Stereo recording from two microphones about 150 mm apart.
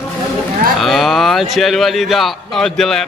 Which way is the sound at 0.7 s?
Centre (ahead or behind).